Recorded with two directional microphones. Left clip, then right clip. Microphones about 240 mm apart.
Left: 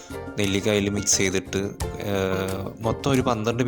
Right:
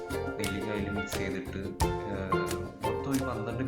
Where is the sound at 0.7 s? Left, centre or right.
Left.